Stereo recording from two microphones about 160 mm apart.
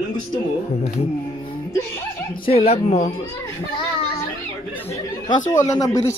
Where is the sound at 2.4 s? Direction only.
40° left (ahead or behind).